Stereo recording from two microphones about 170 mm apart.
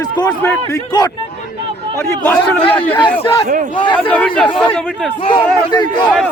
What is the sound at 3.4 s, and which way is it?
Speech, 45° right (ahead or behind).